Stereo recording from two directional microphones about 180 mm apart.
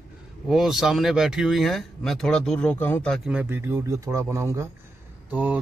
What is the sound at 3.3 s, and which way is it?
Speech, 10° right (ahead or behind).